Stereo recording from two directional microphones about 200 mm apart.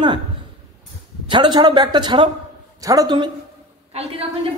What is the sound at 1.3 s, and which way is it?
A man's voice, 20° right (ahead or behind).